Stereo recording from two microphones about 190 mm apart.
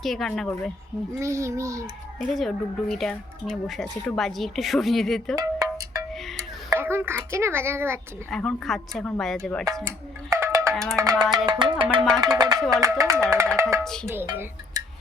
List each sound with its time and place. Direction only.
0.0 s speech: centre (ahead or behind)
1.2 s a child's voice: 15° right (ahead or behind)
2.3 s speech: centre (ahead or behind)
5.4 s cowbell: 20° right (ahead or behind)
6.7 s a child's voice: 10° right (ahead or behind)
8.3 s speech: 5° left (ahead or behind)
9.8 s music: 15° right (ahead or behind)
12.2 s a child's voice: 20° right (ahead or behind)
13.8 s speech: centre (ahead or behind)
14.1 s speech: 10° right (ahead or behind)